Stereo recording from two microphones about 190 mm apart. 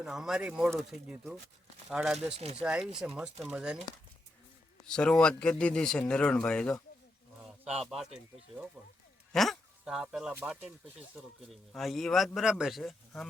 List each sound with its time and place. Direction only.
0.0 s speech: 5° right (ahead or behind)
2.3 s speech: 30° right (ahead or behind)
2.6 s speech: 5° right (ahead or behind)
9.3 s speech: centre (ahead or behind)